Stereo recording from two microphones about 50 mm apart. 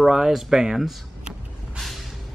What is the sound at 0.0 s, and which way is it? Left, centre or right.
Speech, centre.